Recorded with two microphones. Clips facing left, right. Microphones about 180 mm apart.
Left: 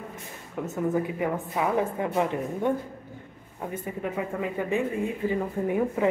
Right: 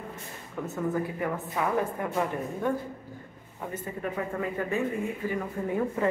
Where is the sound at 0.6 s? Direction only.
15° left (ahead or behind).